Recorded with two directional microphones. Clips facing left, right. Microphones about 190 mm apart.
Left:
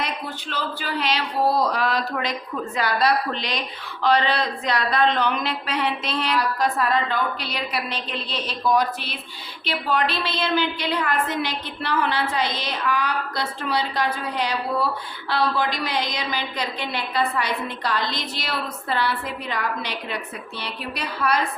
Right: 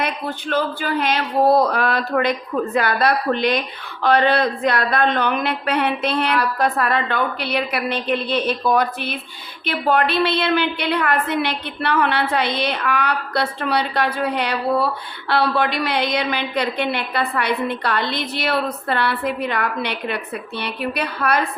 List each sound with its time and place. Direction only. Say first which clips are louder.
0.0 s a woman's voice: right 5 dB; 55° right (ahead or behind)